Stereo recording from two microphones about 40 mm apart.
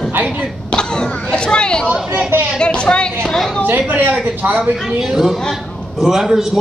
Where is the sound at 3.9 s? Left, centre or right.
Right.